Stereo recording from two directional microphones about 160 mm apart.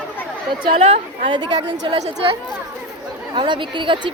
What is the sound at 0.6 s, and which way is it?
Speech, 40° right (ahead or behind).